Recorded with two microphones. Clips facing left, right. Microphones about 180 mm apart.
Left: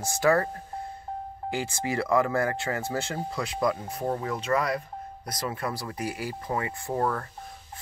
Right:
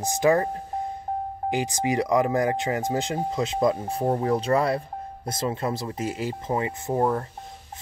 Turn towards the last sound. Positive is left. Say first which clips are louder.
# right 4 dB
turn(degrees=-20)  # may be behind; listen again after turning